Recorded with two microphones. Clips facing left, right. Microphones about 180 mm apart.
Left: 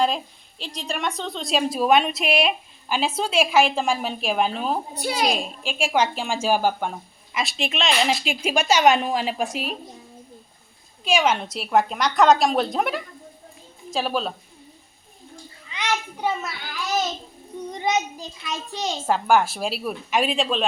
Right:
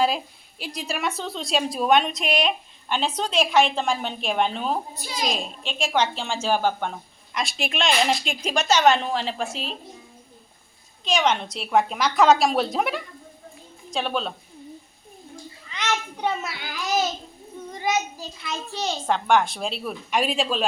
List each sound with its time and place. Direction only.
0.6 s a woman's voice: 10° right (ahead or behind)
4.9 s a child's voice: 65° left (ahead or behind)
5.3 s a woman's voice: 5° left (ahead or behind)
11.0 s a woman's voice: 5° left (ahead or behind)
15.7 s a sound: 10° left (ahead or behind)
17.7 s a woman's voice: 20° left (ahead or behind); by 20.7 s centre (ahead or behind)